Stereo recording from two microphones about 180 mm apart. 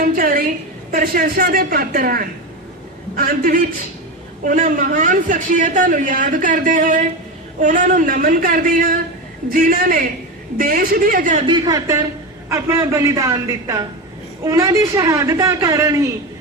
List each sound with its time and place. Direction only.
0.0 s a woman's voice: 55° right (ahead or behind)
11.4 s a man's voice: 20° right (ahead or behind)